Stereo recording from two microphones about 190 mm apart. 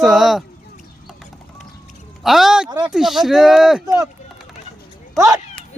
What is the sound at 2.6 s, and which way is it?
Speech, 20° right (ahead or behind).